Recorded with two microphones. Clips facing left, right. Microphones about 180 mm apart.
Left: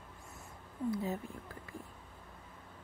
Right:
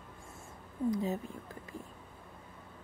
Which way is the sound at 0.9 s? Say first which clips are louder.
Right 3 dB; 20° right (ahead or behind).